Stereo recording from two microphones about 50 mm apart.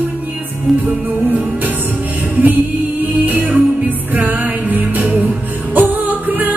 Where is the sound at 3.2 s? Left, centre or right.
Right.